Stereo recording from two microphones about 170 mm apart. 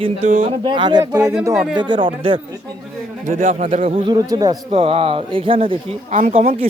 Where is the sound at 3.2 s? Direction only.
50° right (ahead or behind).